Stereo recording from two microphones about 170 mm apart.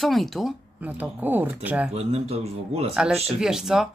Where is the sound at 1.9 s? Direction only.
35° right (ahead or behind).